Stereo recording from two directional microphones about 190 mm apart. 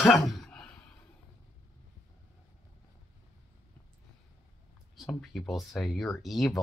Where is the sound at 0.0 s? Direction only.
Centre (ahead or behind).